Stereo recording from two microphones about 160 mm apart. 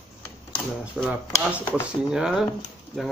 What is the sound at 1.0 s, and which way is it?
Speech, 10° right (ahead or behind).